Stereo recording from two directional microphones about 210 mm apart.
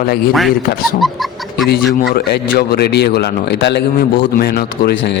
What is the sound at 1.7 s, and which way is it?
A man's voice, 50° left (ahead or behind).